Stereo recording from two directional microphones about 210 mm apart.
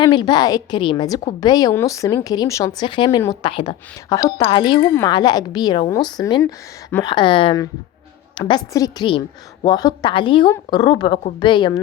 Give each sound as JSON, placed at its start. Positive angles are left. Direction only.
{"t": 0.0, "sound": "speech", "side_deg": 20}